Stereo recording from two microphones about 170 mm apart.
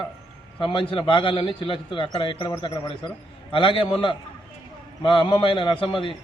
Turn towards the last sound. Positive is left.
turn(degrees=30)  # may be behind; listen again after turning